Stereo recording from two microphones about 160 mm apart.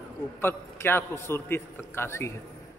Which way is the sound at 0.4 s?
15° left (ahead or behind).